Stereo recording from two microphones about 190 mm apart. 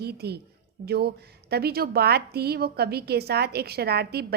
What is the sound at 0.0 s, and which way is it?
A woman's voice, 55° right (ahead or behind).